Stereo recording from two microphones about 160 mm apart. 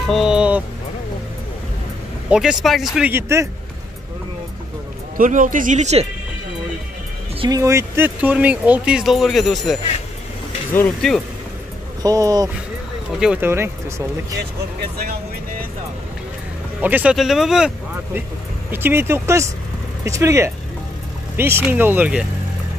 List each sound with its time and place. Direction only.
0.1 s speech: 5° right (ahead or behind)
2.2 s speech: 5° right (ahead or behind)
3.1 s speech: 15° right (ahead or behind)
5.1 s speech: 55° right (ahead or behind)
7.3 s speech: 25° right (ahead or behind); by 9.8 s centre (ahead or behind)
11.0 s speech: centre (ahead or behind)
12.0 s speech: 25° right (ahead or behind)
13.2 s speech: 10° right (ahead or behind)
16.8 s speech: 10° right (ahead or behind)
18.7 s speech: 15° right (ahead or behind)